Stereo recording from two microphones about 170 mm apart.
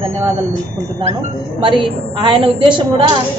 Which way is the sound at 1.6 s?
30° right (ahead or behind).